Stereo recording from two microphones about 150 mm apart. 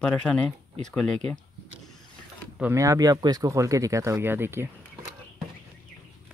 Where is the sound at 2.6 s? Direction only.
15° right (ahead or behind).